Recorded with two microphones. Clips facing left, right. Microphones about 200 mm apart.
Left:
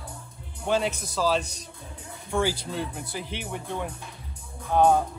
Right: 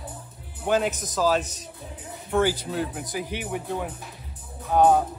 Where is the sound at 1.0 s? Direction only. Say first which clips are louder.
Right 2 dB; 15° right (ahead or behind).